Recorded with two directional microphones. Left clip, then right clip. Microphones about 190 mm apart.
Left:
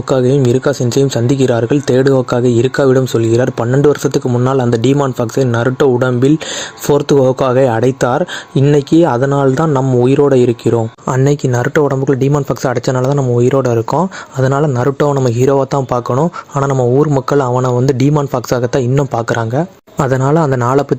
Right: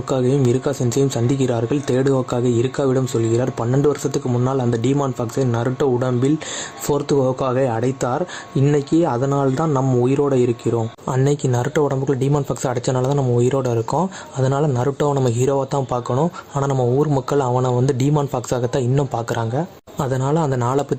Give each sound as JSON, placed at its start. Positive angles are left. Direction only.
{"t": 0.1, "sound": "speech", "side_deg": 30}